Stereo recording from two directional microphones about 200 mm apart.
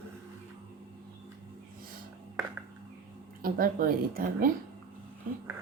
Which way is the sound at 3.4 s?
45° right (ahead or behind).